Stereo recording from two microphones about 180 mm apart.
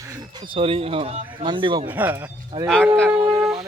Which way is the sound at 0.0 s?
20° right (ahead or behind).